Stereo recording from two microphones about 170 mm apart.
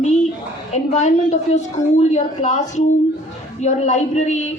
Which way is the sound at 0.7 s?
45° left (ahead or behind).